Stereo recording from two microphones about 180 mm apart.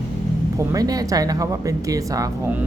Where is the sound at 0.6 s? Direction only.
20° right (ahead or behind).